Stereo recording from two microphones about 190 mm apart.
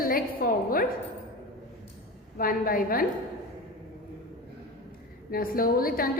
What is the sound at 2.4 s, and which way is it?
Speech, 50° left (ahead or behind).